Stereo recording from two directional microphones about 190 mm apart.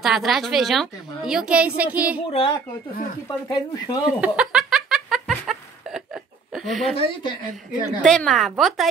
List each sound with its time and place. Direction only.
0.0 s a woman's voice: centre (ahead or behind)
1.8 s child singing: 5° right (ahead or behind)
2.2 s a woman's voice: 25° left (ahead or behind)
4.2 s laughter: 5° right (ahead or behind)
7.0 s a woman's voice: 25° left (ahead or behind)
8.0 s a woman's voice: centre (ahead or behind)